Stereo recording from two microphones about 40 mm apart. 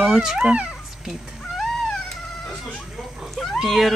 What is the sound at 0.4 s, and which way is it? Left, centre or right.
Speech, right.